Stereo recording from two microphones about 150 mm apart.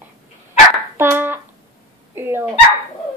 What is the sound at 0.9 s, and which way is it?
Hands, 15° right (ahead or behind).